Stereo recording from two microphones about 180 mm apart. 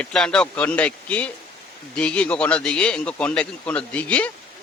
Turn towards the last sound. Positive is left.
turn(degrees=5)  # may be behind; listen again after turning